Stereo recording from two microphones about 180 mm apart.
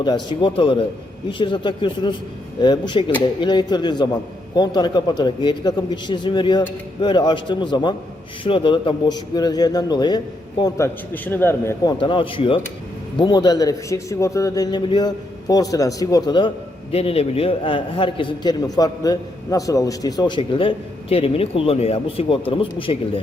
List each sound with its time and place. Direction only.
0.0 s a man's voice: 25° left (ahead or behind)
11.9 s a man's voice: 30° left (ahead or behind)
16.9 s a man's voice: 35° left (ahead or behind)